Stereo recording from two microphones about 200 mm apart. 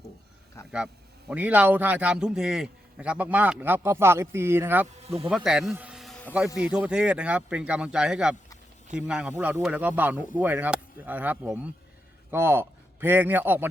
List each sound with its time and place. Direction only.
1.3 s a man's voice: 10° right (ahead or behind)
5.0 s speech: 30° right (ahead or behind)
5.3 s a man's voice: centre (ahead or behind)